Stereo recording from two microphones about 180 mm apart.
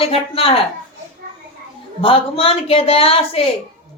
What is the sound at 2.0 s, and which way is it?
A woman's voice, 30° left (ahead or behind).